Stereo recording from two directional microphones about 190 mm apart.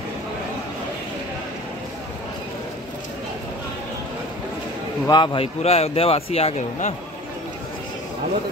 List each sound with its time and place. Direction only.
5.0 s speech: 25° left (ahead or behind)